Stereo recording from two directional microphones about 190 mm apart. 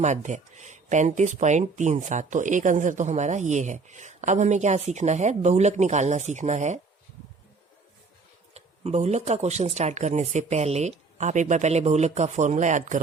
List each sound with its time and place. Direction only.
0.0 s speech: 40° right (ahead or behind)
8.5 s speech: 35° right (ahead or behind)